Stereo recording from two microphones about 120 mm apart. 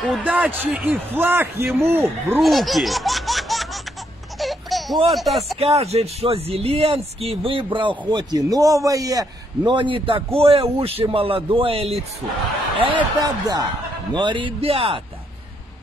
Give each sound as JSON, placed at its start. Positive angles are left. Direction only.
{"t": 0.2, "sound": "a man's voice", "side_deg": -10}
{"t": 2.3, "sound": "baby laughter", "side_deg": 0}
{"t": 5.6, "sound": "a man's voice", "side_deg": -55}
{"t": 12.8, "sound": "a man's voice", "side_deg": -40}